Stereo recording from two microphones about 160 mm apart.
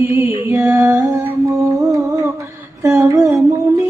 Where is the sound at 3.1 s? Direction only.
20° right (ahead or behind).